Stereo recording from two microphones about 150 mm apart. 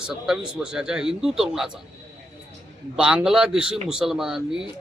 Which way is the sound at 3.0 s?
5° right (ahead or behind).